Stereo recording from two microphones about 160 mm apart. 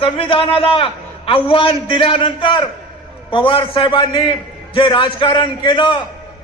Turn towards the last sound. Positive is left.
turn(degrees=30)  # may be behind; listen again after turning